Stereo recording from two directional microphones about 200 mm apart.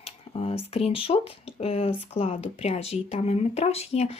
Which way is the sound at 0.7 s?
30° left (ahead or behind).